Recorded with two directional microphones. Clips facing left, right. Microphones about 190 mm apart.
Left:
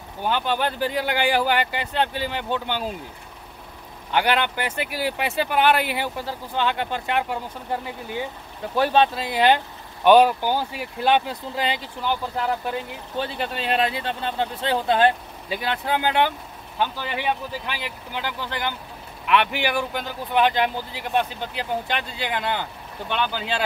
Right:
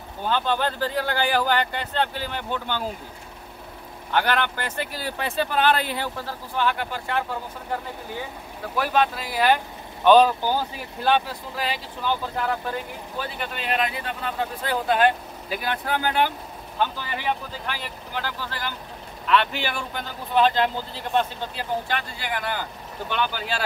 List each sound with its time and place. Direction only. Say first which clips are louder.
0.2 s speech: even; 15° left (ahead or behind)
4.1 s speech: left 1 dB; 15° left (ahead or behind)
8.7 s speech: left 3 dB; 30° left (ahead or behind)
13.2 s speech: left 4 dB; 30° left (ahead or behind)
17.6 s speech: left 1 dB; 15° left (ahead or behind)